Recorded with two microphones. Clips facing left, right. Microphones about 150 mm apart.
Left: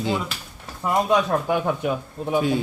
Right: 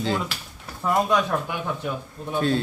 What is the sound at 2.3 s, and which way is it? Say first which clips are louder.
Speech: left 2 dB; 10° left (ahead or behind).